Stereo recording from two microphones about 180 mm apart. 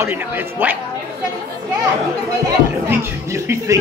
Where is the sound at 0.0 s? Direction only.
10° right (ahead or behind).